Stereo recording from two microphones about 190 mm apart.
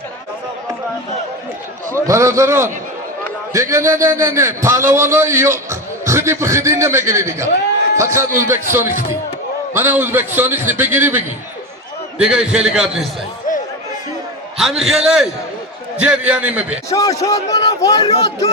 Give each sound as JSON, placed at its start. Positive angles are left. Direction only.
{"t": 2.0, "sound": "a man's voice", "side_deg": -15}
{"t": 12.2, "sound": "a man's voice", "side_deg": -5}
{"t": 14.6, "sound": "a man's voice", "side_deg": 0}
{"t": 16.9, "sound": "a man's voice", "side_deg": 15}